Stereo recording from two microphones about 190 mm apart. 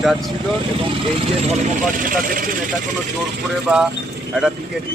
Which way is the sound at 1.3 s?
35° right (ahead or behind).